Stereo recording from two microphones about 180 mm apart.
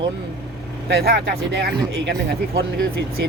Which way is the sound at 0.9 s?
60° right (ahead or behind).